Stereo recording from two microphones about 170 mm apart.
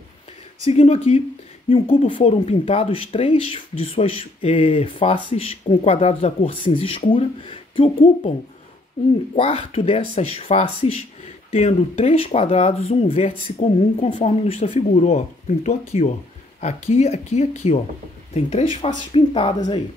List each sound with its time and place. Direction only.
0.7 s speech: 35° left (ahead or behind)
9.3 s speech: 35° left (ahead or behind)